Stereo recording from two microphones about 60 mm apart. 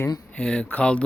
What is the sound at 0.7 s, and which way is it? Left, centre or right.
Speech, left.